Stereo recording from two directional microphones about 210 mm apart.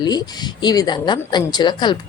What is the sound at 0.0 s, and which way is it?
Speech, 20° left (ahead or behind).